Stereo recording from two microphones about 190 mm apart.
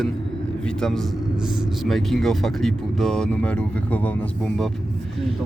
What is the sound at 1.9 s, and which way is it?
Speech, centre (ahead or behind).